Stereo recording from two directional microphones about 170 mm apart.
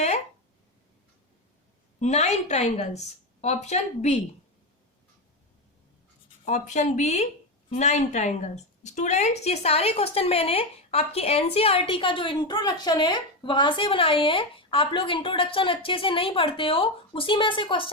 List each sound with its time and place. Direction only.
2.0 s speech: 40° left (ahead or behind)
6.4 s a woman's voice: 45° left (ahead or behind)